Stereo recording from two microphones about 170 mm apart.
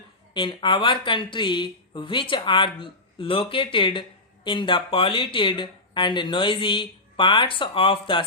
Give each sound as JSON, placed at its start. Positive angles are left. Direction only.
{"t": 0.3, "sound": "speech", "side_deg": 30}